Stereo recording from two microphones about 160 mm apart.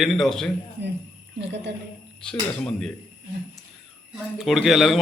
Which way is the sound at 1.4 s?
90° right.